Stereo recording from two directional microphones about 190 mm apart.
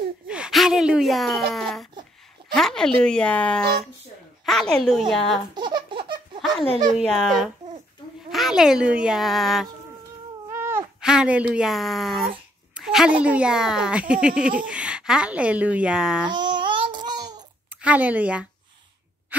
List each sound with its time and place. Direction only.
0.3 s speech: 5° right (ahead or behind)
2.5 s a sound: 5° left (ahead or behind)
3.0 s speech: 5° left (ahead or behind)
5.5 s laughter: 25° right (ahead or behind)
6.9 s speech: centre (ahead or behind)
10.5 s speech: 15° right (ahead or behind)
16.3 s babbling: 25° right (ahead or behind)
17.8 s a woman's voice: 10° right (ahead or behind)